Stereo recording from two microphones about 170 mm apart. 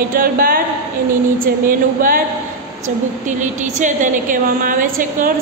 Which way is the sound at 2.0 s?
55° right (ahead or behind).